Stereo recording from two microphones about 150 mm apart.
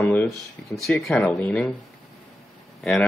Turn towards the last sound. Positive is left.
turn(degrees=0)  # may be behind; listen again after turning